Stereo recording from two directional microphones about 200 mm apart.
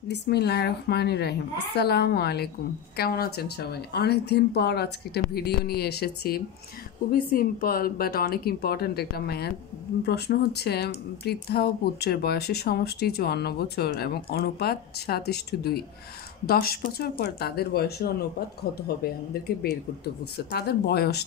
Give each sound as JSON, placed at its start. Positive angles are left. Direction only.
{"t": 0.1, "sound": "a woman's voice", "side_deg": 55}